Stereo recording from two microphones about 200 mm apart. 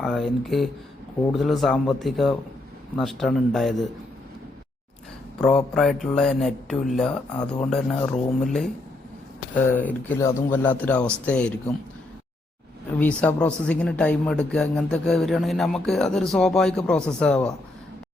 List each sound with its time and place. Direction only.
0.0 s speech: centre (ahead or behind)
5.5 s speech: 5° left (ahead or behind)
9.7 s speech: 10° left (ahead or behind)
13.0 s speech: 5° left (ahead or behind)